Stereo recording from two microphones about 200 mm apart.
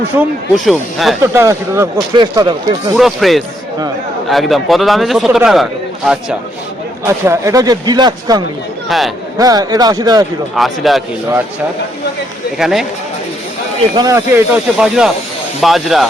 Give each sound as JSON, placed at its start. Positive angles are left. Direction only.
{"t": 0.2, "sound": "a man's voice", "side_deg": 0}
{"t": 1.2, "sound": "speech", "side_deg": -15}
{"t": 2.9, "sound": "a man's voice", "side_deg": 0}
{"t": 7.0, "sound": "speech", "side_deg": -15}
{"t": 8.9, "sound": "a man's voice", "side_deg": 0}
{"t": 9.4, "sound": "speech", "side_deg": -20}
{"t": 10.5, "sound": "a man's voice", "side_deg": 0}
{"t": 12.5, "sound": "a man's voice", "side_deg": 0}
{"t": 13.9, "sound": "a man's voice", "side_deg": -15}